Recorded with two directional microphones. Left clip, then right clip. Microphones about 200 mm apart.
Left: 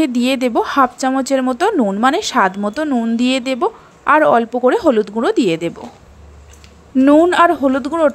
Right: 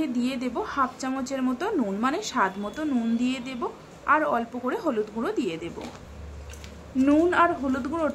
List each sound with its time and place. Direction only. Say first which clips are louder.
0.0 s speech: left 13 dB; 40° left (ahead or behind)
7.0 s speech: left 11 dB; 35° left (ahead or behind)